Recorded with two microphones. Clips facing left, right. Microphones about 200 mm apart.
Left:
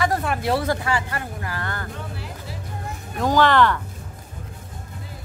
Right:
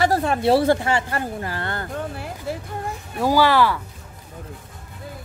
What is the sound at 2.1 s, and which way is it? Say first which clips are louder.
Music: right 6 dB; 55° right (ahead or behind).